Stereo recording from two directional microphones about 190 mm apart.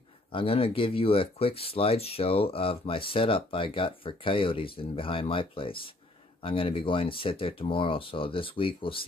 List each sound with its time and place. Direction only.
0.3 s speech: 30° left (ahead or behind)